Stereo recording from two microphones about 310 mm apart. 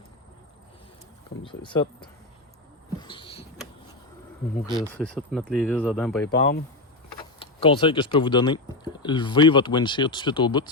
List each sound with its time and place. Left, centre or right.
1.5 s speech: centre
3.0 s rodents: centre
4.9 s speech: centre
6.2 s speech: left
7.3 s speech: centre